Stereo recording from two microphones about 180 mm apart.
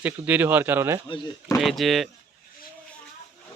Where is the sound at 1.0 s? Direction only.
25° left (ahead or behind).